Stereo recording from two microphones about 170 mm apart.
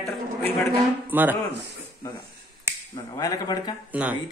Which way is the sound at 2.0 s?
20° left (ahead or behind).